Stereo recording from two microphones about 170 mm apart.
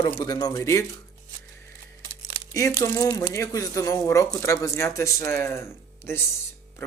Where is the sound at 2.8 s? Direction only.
20° left (ahead or behind).